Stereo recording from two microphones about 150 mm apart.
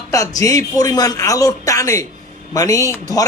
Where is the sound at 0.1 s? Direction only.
20° left (ahead or behind).